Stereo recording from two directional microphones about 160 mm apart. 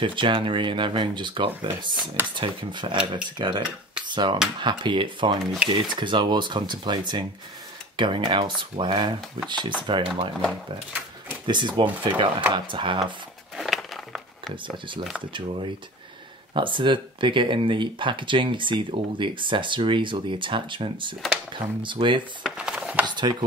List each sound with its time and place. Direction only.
0.0 s speech: 30° right (ahead or behind)
11.4 s speech: 30° right (ahead or behind)
13.6 s a sound: centre (ahead or behind)
14.5 s speech: 30° right (ahead or behind)
22.4 s a sound: 5° right (ahead or behind)
23.0 s speech: 25° right (ahead or behind)